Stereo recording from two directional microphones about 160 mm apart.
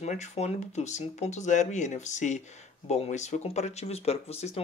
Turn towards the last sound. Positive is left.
turn(degrees=40)  # may be behind; listen again after turning